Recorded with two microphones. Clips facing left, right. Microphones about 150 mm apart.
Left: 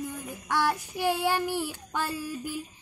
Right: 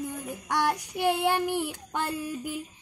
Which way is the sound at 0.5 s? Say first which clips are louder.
Even; 15° right (ahead or behind).